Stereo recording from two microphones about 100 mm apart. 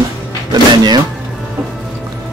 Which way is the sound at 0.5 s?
45° right (ahead or behind).